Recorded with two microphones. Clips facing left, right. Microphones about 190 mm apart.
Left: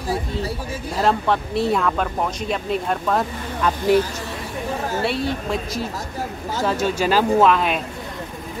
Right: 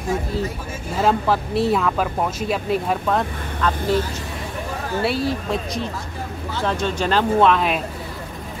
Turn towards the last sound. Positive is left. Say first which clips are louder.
# even
turn(degrees=0)  # may be behind; listen again after turning